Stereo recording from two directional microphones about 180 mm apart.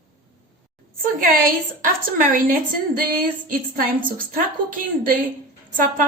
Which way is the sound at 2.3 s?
50° right (ahead or behind).